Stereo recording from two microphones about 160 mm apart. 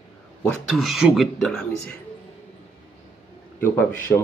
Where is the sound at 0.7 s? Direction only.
Centre (ahead or behind).